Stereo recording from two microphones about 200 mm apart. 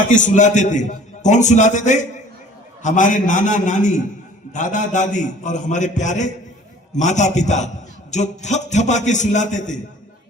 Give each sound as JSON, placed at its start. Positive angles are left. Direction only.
{"t": 0.1, "sound": "a man's voice", "side_deg": 40}